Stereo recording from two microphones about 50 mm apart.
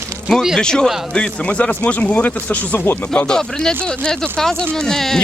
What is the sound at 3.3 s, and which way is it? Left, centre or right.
Speech, centre.